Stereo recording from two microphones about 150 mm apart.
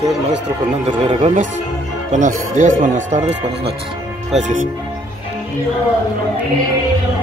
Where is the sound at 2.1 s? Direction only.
55° right (ahead or behind).